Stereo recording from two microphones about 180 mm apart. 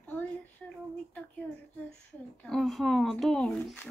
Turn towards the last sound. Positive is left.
turn(degrees=5)  # may be behind; listen again after turning